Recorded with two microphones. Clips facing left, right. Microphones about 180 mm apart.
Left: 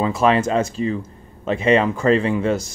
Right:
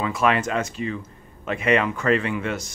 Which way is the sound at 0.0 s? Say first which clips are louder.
Left 5 dB; 30° left (ahead or behind).